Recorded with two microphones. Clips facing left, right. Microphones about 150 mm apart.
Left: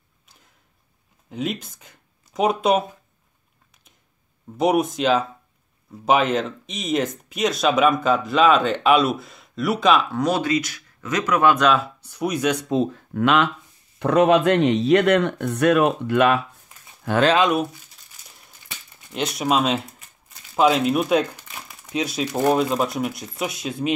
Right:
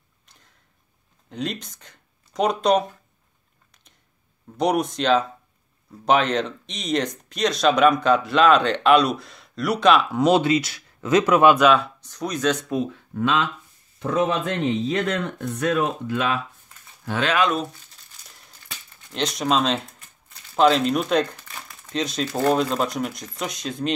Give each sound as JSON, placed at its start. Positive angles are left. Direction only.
{"t": 1.3, "sound": "speech", "side_deg": 5}
{"t": 4.6, "sound": "speech", "side_deg": 5}
{"t": 10.1, "sound": "speech", "side_deg": -20}
{"t": 11.4, "sound": "speech", "side_deg": -5}
{"t": 12.6, "sound": "speech", "side_deg": 25}
{"t": 13.1, "sound": "speech", "side_deg": 70}
{"t": 17.4, "sound": "speech", "side_deg": 15}
{"t": 18.9, "sound": "speech", "side_deg": 5}